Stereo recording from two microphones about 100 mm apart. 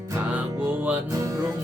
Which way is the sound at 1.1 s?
35° right (ahead or behind).